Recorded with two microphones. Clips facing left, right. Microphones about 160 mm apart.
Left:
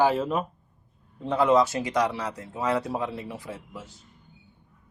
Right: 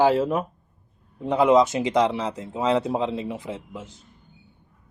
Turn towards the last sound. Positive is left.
turn(degrees=-20)  # may be behind; listen again after turning